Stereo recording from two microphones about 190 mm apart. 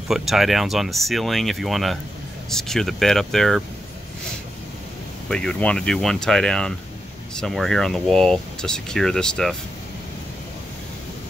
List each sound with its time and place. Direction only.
0.1 s speech: centre (ahead or behind)
5.3 s speech: 5° left (ahead or behind)